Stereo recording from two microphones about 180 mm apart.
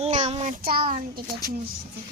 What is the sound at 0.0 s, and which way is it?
Child singing, 40° right (ahead or behind).